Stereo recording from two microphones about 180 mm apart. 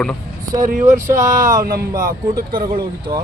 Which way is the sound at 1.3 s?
45° right (ahead or behind).